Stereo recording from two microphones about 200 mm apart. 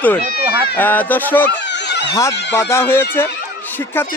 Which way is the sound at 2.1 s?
15° left (ahead or behind).